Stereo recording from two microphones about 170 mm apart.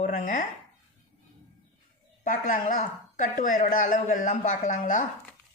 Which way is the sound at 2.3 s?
55° left (ahead or behind).